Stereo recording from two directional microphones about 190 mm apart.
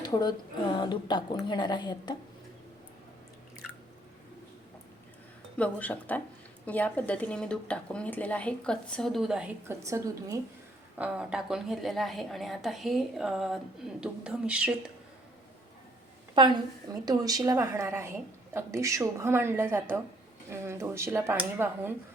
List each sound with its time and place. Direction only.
0.0 s speech: 20° left (ahead or behind)
5.5 s a woman's voice: 5° left (ahead or behind)
16.3 s a woman's voice: 25° right (ahead or behind)